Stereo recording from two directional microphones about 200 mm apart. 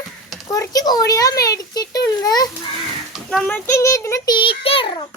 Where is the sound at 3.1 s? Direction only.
Centre (ahead or behind); by 5.0 s 25° left (ahead or behind).